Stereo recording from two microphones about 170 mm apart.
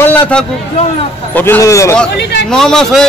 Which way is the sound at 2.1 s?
80° left.